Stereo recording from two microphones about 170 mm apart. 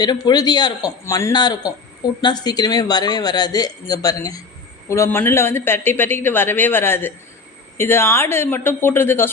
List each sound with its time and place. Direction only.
0.0 s speech: 25° left (ahead or behind)